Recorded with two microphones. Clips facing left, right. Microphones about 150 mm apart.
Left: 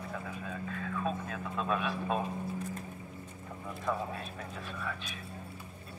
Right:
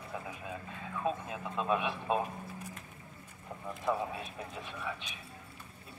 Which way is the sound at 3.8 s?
15° right (ahead or behind).